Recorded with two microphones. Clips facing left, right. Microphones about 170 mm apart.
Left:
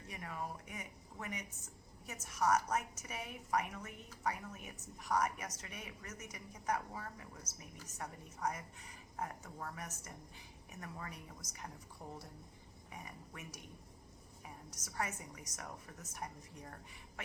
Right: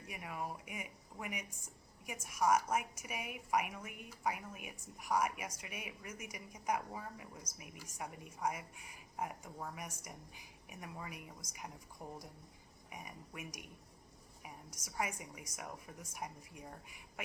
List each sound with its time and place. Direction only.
0.1 s speech: 10° right (ahead or behind)
14.4 s a sound: 10° right (ahead or behind)
15.2 s speech: 10° right (ahead or behind)